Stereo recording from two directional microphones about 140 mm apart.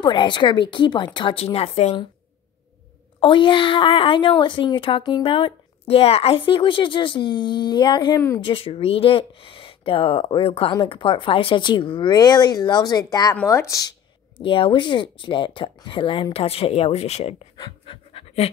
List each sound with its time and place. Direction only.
0.0 s a woman's voice: 35° left (ahead or behind)
3.2 s a woman's voice: 35° left (ahead or behind)
14.4 s a woman's voice: 40° left (ahead or behind)